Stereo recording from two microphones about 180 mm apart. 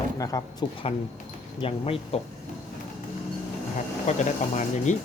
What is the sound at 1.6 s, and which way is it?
Speech, 30° left (ahead or behind).